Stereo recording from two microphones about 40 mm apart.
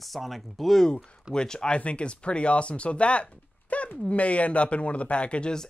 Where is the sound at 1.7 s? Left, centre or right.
Left.